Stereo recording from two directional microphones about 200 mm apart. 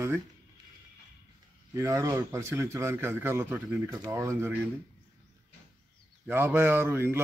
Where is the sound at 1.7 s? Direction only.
15° right (ahead or behind).